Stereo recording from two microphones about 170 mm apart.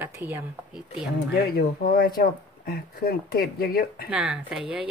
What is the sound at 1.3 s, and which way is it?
Speech, 65° left (ahead or behind).